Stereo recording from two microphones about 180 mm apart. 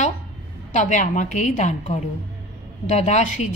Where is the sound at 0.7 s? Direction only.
45° left (ahead or behind).